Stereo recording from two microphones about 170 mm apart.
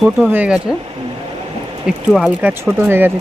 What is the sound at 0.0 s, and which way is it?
Speech, 10° right (ahead or behind).